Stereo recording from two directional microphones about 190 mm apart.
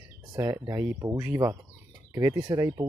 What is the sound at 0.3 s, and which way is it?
Speech, 20° right (ahead or behind).